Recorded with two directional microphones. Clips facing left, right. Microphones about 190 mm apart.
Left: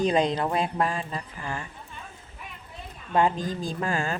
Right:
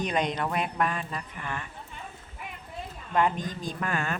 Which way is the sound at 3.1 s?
25° left (ahead or behind).